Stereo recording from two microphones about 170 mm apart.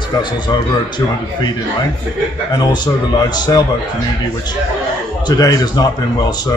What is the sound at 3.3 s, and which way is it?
Speech, 25° left (ahead or behind).